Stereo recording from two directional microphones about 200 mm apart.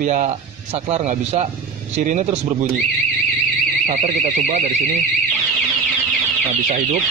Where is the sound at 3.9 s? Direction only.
35° right (ahead or behind).